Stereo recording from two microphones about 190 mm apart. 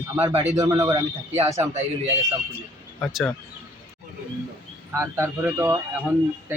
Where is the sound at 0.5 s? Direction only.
20° right (ahead or behind).